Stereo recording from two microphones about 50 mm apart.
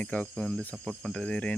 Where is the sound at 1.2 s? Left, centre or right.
Left.